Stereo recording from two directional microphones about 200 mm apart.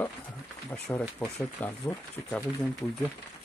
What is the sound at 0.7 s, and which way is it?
Speech, 5° left (ahead or behind).